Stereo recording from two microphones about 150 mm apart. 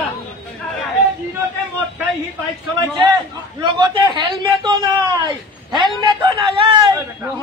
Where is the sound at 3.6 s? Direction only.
30° right (ahead or behind).